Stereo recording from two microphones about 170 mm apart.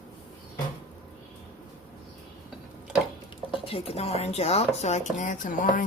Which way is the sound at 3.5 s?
35° left (ahead or behind).